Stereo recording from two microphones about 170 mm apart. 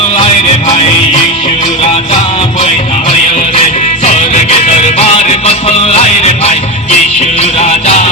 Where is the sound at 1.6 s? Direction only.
40° left (ahead or behind).